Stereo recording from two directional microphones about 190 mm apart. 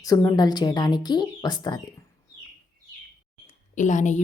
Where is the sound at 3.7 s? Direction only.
40° left (ahead or behind).